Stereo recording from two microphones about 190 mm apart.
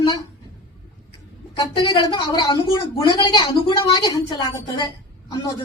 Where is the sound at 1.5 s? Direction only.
20° left (ahead or behind).